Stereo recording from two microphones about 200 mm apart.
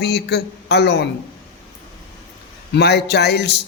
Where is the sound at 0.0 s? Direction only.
55° left (ahead or behind).